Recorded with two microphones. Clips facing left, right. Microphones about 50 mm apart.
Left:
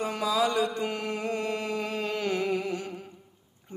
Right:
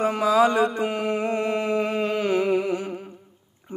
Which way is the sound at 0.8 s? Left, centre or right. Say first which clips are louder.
Right 6 dB; centre.